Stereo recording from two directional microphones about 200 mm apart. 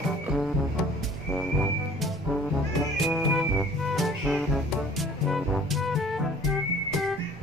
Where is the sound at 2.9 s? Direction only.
Centre (ahead or behind).